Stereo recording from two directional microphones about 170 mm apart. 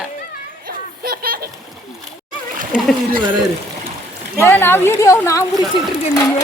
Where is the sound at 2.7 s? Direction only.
5° right (ahead or behind).